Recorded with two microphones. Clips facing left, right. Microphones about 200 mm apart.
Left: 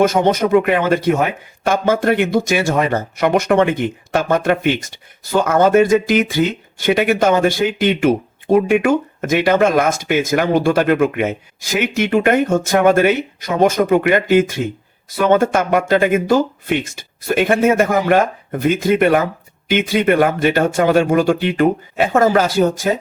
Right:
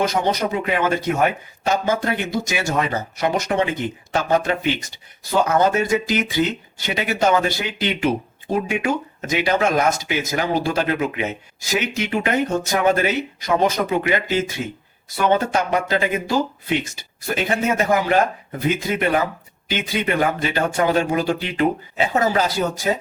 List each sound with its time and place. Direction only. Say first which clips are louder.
0.0 s speech: left 6 dB; 50° left (ahead or behind)